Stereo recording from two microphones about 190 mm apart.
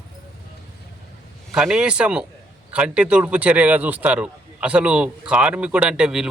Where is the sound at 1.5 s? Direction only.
5° right (ahead or behind).